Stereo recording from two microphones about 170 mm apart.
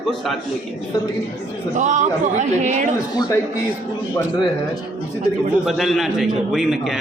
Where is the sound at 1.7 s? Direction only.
45° right (ahead or behind).